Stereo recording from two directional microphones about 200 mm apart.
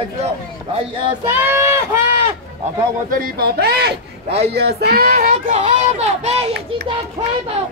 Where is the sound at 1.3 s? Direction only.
10° right (ahead or behind).